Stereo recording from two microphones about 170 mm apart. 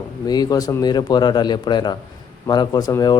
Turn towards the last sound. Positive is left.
turn(degrees=25)  # may be behind; listen again after turning